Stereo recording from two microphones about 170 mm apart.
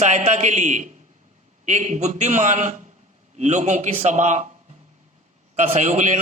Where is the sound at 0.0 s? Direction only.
45° right (ahead or behind).